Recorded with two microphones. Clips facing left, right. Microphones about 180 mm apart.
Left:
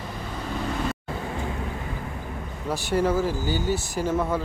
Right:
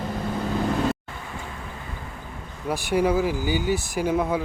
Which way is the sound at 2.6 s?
15° right (ahead or behind).